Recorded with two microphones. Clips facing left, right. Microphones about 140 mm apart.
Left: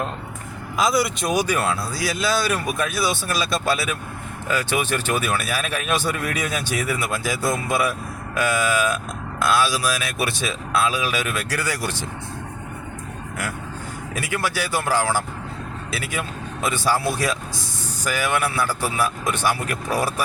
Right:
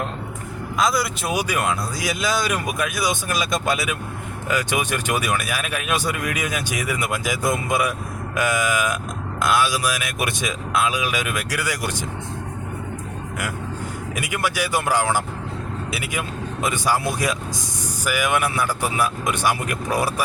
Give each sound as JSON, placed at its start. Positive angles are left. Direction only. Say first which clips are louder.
{"t": 0.8, "sound": "speech", "louder": "left 1 dB", "side_deg": 0}
{"t": 1.3, "sound": "speech", "louder": "even", "side_deg": -10}
{"t": 14.2, "sound": "speech", "louder": "right 1 dB", "side_deg": -15}